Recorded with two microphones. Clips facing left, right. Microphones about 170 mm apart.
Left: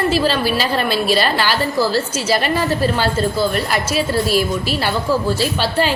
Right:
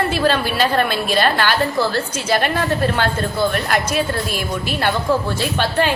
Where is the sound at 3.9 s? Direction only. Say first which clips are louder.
Left 4 dB; 50° right (ahead or behind).